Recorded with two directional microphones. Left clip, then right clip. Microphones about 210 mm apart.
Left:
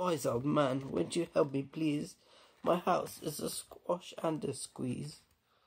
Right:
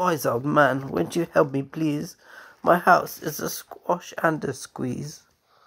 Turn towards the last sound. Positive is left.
turn(degrees=-20)  # may be behind; listen again after turning